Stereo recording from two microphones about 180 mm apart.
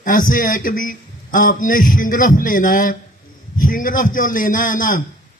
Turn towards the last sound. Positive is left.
turn(degrees=50)  # may be behind; listen again after turning